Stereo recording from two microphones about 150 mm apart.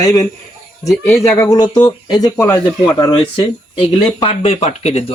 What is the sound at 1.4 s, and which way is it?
Speech, 25° left (ahead or behind).